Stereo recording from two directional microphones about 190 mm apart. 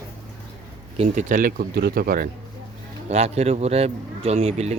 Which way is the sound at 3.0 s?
35° right (ahead or behind).